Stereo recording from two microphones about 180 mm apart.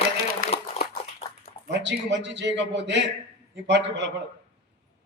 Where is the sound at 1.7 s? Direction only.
75° right (ahead or behind).